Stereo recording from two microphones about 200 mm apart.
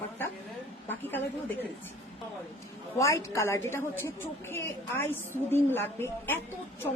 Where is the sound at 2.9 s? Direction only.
15° left (ahead or behind).